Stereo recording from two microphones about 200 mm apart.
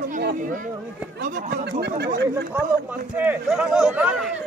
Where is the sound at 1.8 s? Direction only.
55° right (ahead or behind).